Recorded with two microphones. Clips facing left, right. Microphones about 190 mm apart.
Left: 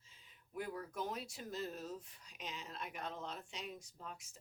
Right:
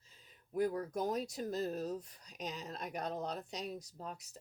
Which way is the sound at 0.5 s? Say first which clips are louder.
Right 9 dB; 40° right (ahead or behind).